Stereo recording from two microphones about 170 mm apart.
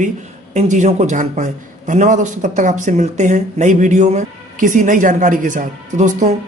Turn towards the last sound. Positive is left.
turn(degrees=-45)  # may be behind; listen again after turning